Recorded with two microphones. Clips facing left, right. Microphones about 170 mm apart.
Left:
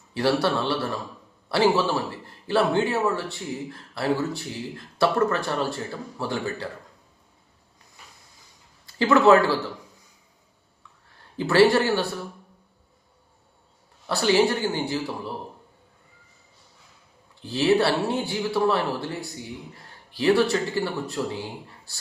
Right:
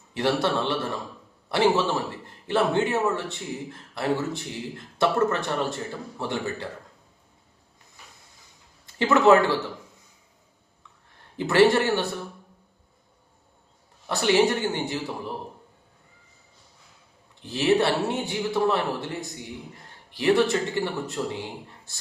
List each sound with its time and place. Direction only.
0.1 s a man's voice: 20° right (ahead or behind)
9.0 s a man's voice: 20° right (ahead or behind)
11.3 s a man's voice: 20° right (ahead or behind)
14.1 s a man's voice: 20° right (ahead or behind)
17.4 s a man's voice: 20° right (ahead or behind)